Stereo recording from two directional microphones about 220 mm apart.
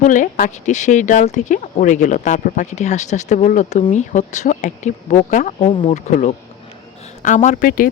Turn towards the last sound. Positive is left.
turn(degrees=35)  # may be behind; listen again after turning